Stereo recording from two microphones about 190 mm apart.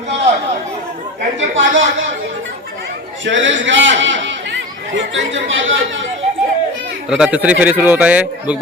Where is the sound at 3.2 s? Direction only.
80° right.